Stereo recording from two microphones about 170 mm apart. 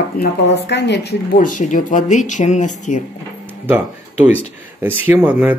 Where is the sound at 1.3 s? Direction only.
50° left (ahead or behind).